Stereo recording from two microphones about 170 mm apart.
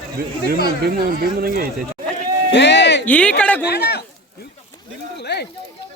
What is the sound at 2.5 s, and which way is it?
Bleat, 90° left.